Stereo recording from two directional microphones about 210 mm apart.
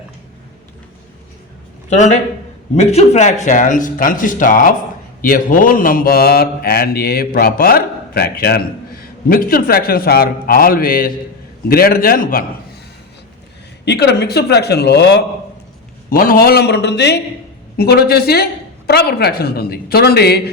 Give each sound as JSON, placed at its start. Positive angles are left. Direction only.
{"t": 1.9, "sound": "a man's voice", "side_deg": 35}
{"t": 13.8, "sound": "a man's voice", "side_deg": 50}